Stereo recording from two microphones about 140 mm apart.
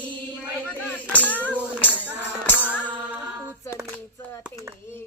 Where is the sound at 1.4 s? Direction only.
10° right (ahead or behind).